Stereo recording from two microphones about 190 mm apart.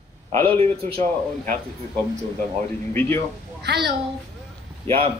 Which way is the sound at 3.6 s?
60° right (ahead or behind).